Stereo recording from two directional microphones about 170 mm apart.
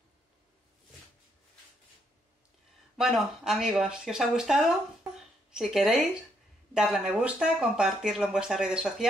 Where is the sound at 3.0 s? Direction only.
Centre (ahead or behind).